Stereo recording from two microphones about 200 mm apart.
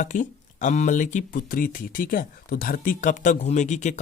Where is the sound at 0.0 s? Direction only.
40° left (ahead or behind).